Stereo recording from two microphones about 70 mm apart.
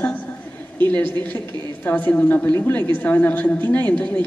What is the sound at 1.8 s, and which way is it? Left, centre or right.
Speech, left.